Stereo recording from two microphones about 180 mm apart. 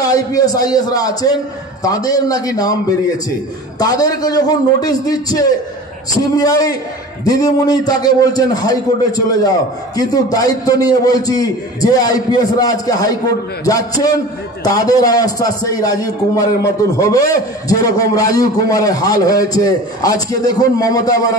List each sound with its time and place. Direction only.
0.0 s a man's voice: 20° left (ahead or behind)
3.8 s a man's voice: 20° left (ahead or behind)